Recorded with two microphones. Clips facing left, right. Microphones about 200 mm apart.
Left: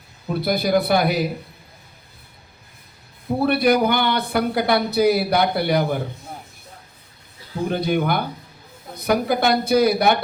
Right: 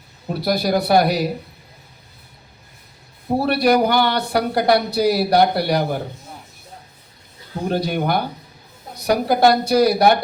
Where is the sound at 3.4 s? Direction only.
50° left (ahead or behind).